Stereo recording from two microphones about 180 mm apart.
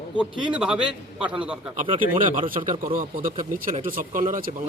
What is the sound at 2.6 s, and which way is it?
Speech, 50° right (ahead or behind).